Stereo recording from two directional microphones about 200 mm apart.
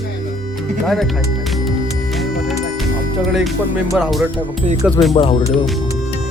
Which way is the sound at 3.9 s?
Centre (ahead or behind).